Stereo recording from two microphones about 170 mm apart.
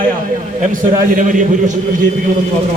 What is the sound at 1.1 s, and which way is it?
Speech, 50° right (ahead or behind).